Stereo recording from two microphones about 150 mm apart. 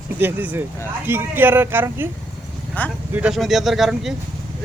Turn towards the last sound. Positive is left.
turn(degrees=0)  # may be behind; listen again after turning